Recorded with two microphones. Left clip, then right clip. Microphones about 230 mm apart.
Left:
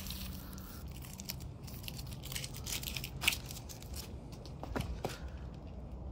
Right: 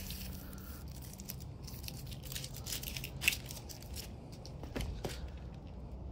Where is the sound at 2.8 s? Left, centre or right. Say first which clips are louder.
Even; left.